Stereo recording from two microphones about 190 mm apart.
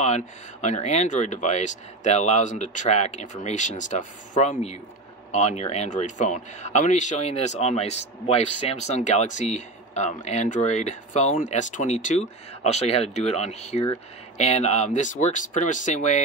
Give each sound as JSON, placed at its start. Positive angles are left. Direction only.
{"t": 0.0, "sound": "speech", "side_deg": 35}